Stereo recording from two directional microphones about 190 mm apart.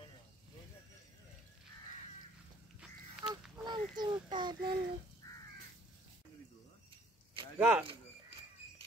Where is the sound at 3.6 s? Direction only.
20° right (ahead or behind).